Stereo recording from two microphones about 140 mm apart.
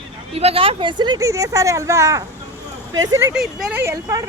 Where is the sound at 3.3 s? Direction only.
5° right (ahead or behind).